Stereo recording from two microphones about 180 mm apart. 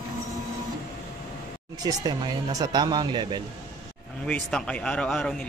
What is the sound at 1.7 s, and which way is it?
Speech, 20° right (ahead or behind).